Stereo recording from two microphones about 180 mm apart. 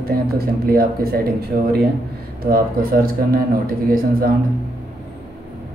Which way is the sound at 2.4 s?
55° right (ahead or behind).